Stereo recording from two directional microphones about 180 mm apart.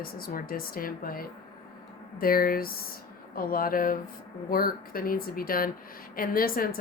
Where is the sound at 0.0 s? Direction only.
55° left (ahead or behind).